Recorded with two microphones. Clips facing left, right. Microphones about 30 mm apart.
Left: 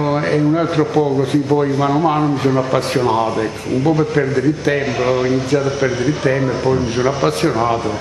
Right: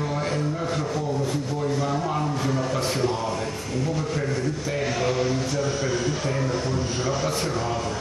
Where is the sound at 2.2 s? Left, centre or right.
Left.